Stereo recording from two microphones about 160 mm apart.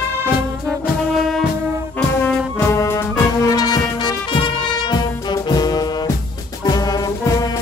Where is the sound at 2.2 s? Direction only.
15° left (ahead or behind).